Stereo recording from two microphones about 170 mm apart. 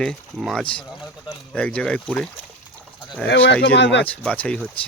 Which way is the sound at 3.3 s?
90° left.